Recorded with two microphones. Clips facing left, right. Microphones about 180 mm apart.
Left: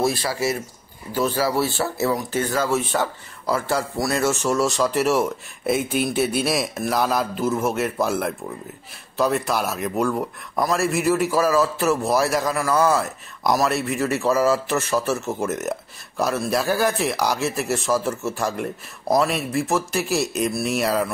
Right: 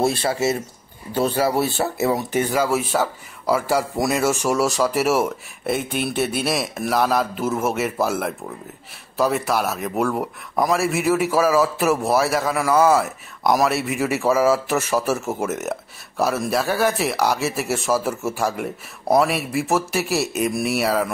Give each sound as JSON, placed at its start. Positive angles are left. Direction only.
{"t": 0.0, "sound": "speech", "side_deg": -25}